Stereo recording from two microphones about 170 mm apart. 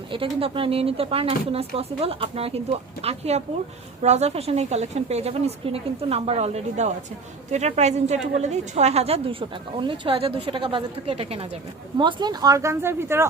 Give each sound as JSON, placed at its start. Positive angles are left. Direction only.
{"t": 0.1, "sound": "speech", "side_deg": -30}